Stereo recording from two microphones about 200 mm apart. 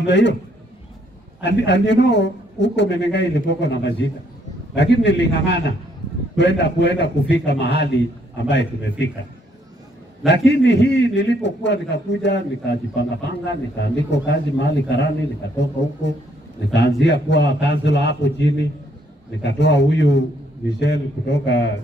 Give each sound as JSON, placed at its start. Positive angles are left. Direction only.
{"t": 0.0, "sound": "a man's voice", "side_deg": 60}
{"t": 1.4, "sound": "a man's voice", "side_deg": 60}
{"t": 10.2, "sound": "a man's voice", "side_deg": 60}